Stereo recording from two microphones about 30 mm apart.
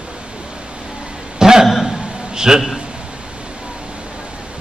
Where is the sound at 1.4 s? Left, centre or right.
Right.